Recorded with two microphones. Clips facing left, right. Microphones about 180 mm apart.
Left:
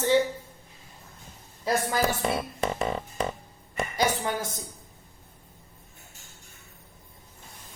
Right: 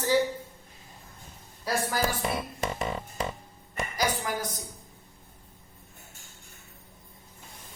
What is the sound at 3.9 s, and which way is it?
Speech, 25° left (ahead or behind).